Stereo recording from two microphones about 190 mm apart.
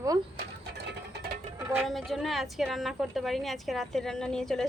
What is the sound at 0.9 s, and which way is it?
Mechanisms, 55° right (ahead or behind).